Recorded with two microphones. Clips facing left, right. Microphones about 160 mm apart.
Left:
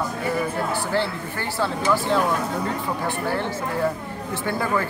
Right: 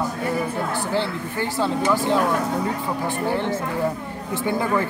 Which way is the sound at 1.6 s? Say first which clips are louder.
Right 1 dB; 15° right (ahead or behind).